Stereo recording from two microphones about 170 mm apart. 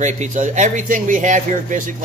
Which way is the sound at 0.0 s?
45° right (ahead or behind).